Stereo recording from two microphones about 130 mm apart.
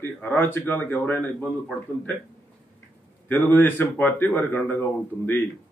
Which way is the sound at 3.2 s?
15° left (ahead or behind).